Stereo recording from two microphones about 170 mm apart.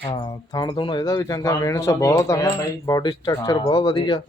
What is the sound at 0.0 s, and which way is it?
Speech, 25° left (ahead or behind).